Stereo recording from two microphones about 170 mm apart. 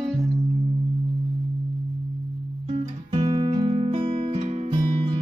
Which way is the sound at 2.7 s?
40° right (ahead or behind).